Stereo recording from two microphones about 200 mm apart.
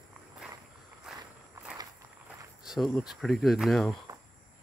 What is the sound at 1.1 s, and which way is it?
Walk, centre (ahead or behind).